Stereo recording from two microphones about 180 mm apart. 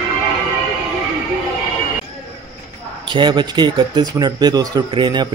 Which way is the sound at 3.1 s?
25° right (ahead or behind).